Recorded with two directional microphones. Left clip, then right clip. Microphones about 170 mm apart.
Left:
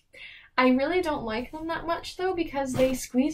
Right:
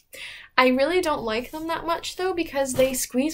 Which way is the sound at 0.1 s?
10° right (ahead or behind).